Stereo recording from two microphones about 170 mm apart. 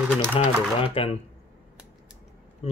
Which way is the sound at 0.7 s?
30° left (ahead or behind).